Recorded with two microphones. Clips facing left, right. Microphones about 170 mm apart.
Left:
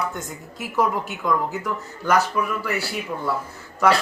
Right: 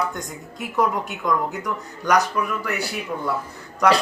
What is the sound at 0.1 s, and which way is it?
Speech, 5° left (ahead or behind).